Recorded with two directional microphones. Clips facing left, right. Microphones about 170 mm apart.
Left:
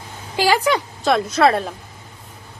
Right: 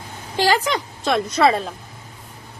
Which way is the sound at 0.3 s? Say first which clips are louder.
Left 2 dB; 10° left (ahead or behind).